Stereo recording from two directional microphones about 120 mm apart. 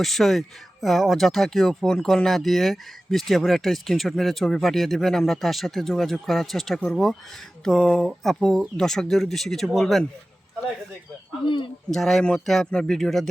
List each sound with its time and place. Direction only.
0.0 s speech: centre (ahead or behind)
11.4 s speech: 45° left (ahead or behind)
11.9 s speech: centre (ahead or behind)